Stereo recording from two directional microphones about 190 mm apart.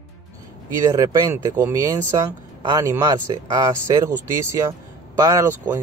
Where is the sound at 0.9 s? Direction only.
20° right (ahead or behind).